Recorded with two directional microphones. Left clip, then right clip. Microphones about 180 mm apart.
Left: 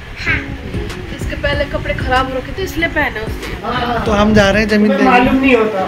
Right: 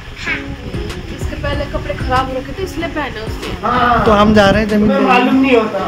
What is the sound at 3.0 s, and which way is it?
Speech, 10° left (ahead or behind).